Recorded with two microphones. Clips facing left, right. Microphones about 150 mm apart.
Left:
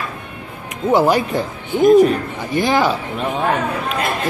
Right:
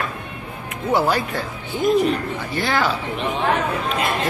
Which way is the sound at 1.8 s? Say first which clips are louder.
Left 8 dB; 45° left (ahead or behind).